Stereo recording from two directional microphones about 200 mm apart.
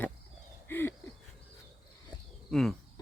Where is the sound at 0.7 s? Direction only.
10° left (ahead or behind).